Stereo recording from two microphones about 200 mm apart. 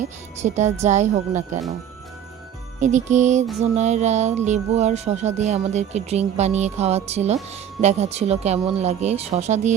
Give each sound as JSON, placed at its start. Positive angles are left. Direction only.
{"t": 0.4, "sound": "speech", "side_deg": -35}
{"t": 2.8, "sound": "speech", "side_deg": -35}